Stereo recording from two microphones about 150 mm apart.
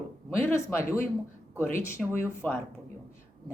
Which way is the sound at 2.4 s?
10° left (ahead or behind).